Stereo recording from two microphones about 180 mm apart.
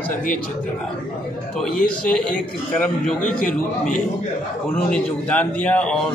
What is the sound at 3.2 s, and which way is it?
Speech, 45° left (ahead or behind).